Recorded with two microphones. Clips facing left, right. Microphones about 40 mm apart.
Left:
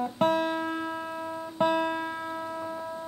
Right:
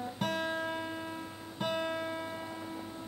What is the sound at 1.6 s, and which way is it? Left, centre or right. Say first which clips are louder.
Music: left 8 dB; left.